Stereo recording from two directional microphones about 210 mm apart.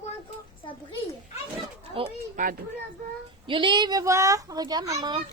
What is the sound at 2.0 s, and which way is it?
Speech, 25° right (ahead or behind).